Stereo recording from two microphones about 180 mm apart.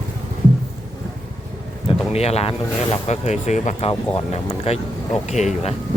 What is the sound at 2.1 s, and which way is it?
Speech, 35° left (ahead or behind).